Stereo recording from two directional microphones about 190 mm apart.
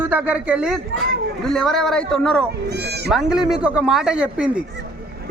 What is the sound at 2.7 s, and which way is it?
Speech, 60° right (ahead or behind).